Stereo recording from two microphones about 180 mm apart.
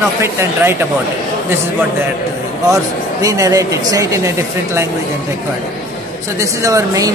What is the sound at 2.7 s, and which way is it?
Speech, 20° right (ahead or behind).